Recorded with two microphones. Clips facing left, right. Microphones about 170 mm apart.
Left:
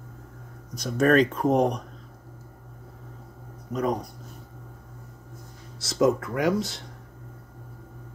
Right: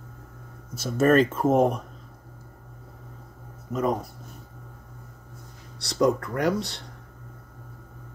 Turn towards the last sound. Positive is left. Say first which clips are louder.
# left 1 dB
turn(degrees=0)  # may be behind; listen again after turning